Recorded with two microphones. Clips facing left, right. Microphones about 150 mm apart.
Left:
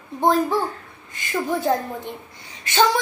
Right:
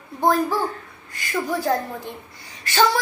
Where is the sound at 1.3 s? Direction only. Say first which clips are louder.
Left 1 dB; 20° left (ahead or behind).